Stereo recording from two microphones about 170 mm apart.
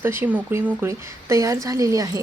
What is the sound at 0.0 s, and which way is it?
Speech, 15° right (ahead or behind).